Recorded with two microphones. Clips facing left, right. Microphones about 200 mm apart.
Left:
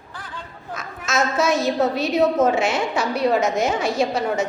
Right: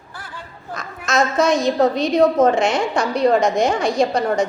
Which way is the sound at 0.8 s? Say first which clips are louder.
Right 3 dB; 5° left (ahead or behind).